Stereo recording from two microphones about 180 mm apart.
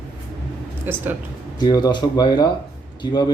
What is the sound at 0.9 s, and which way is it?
Speech, 10° right (ahead or behind).